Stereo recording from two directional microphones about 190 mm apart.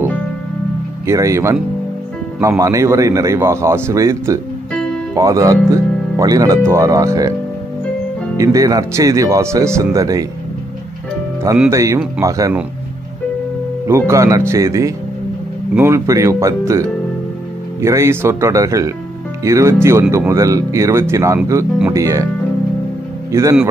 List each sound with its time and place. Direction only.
1.0 s speech: 15° right (ahead or behind)
8.4 s speech: 15° right (ahead or behind)
11.7 s speech: 15° right (ahead or behind)
13.8 s speech: 15° right (ahead or behind)
23.3 s speech: 15° right (ahead or behind)